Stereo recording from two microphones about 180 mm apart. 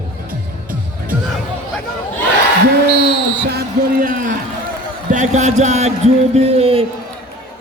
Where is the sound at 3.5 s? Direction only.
55° right (ahead or behind); by 6.8 s 35° right (ahead or behind).